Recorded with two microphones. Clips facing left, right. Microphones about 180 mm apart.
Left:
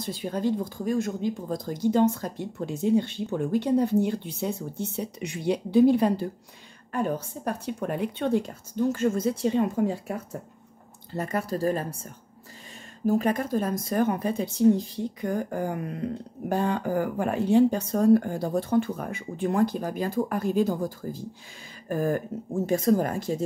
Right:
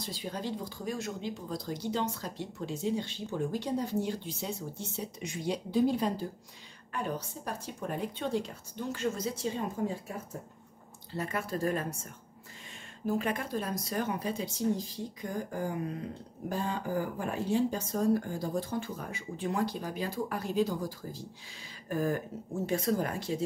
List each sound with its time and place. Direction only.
0.0 s speech: 55° left (ahead or behind)
6.9 s speech: 50° left (ahead or behind); by 10.1 s 70° left (ahead or behind)
11.1 s speech: 40° left (ahead or behind)